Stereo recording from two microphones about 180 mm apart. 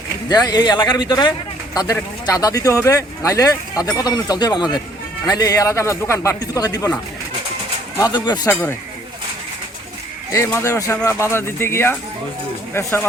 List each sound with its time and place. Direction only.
0.3 s speech: 20° left (ahead or behind)
7.9 s speech: 20° left (ahead or behind)
10.3 s speech: 15° left (ahead or behind)